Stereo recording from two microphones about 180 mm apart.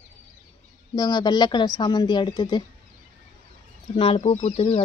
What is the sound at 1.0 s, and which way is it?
Speech, 20° left (ahead or behind).